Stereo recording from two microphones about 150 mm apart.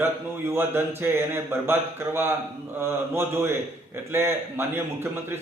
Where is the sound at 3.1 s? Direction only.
15° right (ahead or behind).